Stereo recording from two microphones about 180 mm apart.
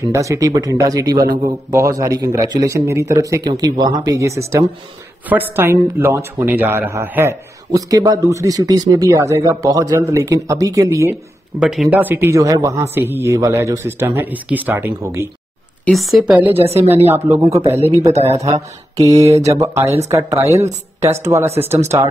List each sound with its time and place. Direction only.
0.1 s a man's voice: 15° right (ahead or behind)
11.6 s speech: centre (ahead or behind)
15.8 s speech: centre (ahead or behind)
16.5 s a woman's voice: 35° right (ahead or behind)
17.1 s speech: 15° right (ahead or behind)
17.6 s a woman's voice: 35° right (ahead or behind)
18.9 s speech: 20° right (ahead or behind)